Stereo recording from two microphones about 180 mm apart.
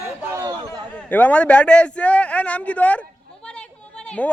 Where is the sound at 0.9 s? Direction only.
10° left (ahead or behind).